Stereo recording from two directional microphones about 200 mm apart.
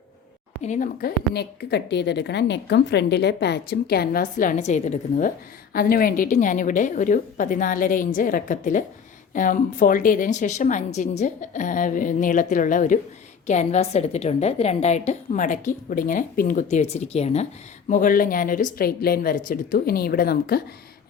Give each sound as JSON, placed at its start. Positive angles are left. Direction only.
{"t": 0.6, "sound": "a woman's voice", "side_deg": 40}
{"t": 1.3, "sound": "a woman's voice", "side_deg": 55}